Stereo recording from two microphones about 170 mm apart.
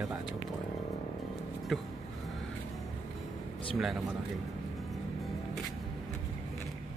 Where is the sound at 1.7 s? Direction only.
Centre (ahead or behind).